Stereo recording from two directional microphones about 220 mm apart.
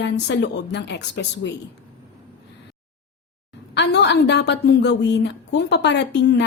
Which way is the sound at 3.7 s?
50° left (ahead or behind).